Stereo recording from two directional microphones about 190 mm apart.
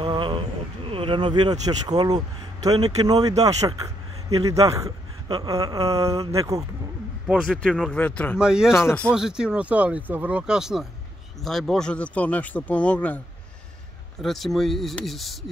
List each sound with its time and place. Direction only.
0.0 s a man's voice: 25° right (ahead or behind)
7.2 s speech: 5° left (ahead or behind)
8.4 s speech: 5° right (ahead or behind)
8.7 s a man's voice: 10° left (ahead or behind)
14.2 s speech: centre (ahead or behind)